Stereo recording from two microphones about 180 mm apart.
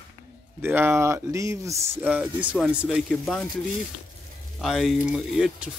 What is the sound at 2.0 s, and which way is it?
Speech, 5° right (ahead or behind).